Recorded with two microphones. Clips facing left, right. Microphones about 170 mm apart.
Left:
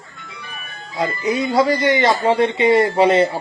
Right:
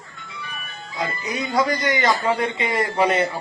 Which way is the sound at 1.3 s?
25° left (ahead or behind).